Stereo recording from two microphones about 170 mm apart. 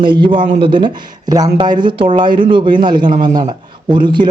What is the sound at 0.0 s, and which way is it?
A man's voice, 25° right (ahead or behind).